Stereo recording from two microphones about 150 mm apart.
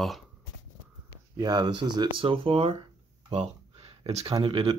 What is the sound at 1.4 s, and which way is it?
Speech, 25° right (ahead or behind).